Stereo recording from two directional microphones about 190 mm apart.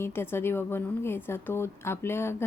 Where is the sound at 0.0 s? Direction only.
10° left (ahead or behind).